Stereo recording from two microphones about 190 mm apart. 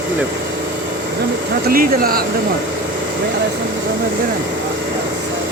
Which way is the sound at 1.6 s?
50° right (ahead or behind).